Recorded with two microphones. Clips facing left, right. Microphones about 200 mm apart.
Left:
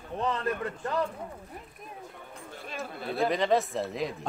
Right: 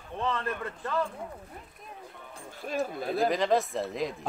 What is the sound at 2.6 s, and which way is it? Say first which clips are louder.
Speech: right 7 dB; 40° right (ahead or behind).